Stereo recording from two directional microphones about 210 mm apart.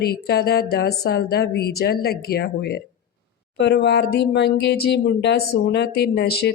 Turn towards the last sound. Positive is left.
turn(degrees=50)  # may be behind; listen again after turning